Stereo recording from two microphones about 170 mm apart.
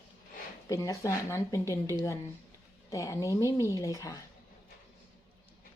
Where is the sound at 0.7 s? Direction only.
20° left (ahead or behind).